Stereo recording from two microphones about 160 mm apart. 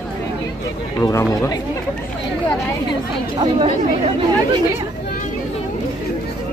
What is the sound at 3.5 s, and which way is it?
Speech, 35° right (ahead or behind).